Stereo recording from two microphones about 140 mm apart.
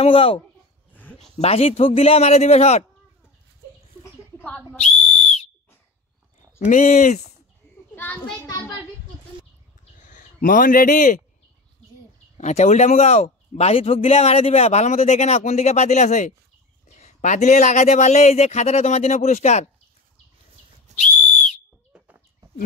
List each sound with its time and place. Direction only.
0.0 s speech: 40° left (ahead or behind)
1.4 s a man's voice: 45° left (ahead or behind)
4.7 s whistle: 50° left (ahead or behind)
6.7 s speech: 65° left (ahead or behind)
7.9 s a child's voice: 15° left (ahead or behind)
10.0 s speech: 70° left (ahead or behind)
12.4 s a man's voice: 55° left (ahead or behind)
20.9 s whistle: 55° right (ahead or behind)
21.9 s bird: 10° right (ahead or behind)